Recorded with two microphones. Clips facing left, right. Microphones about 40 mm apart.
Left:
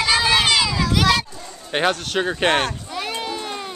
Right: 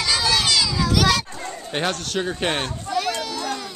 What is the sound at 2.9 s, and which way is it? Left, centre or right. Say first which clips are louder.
Children playing: right 5 dB; centre.